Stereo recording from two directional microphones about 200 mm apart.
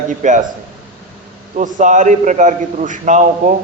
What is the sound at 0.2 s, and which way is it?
Speech, 40° right (ahead or behind).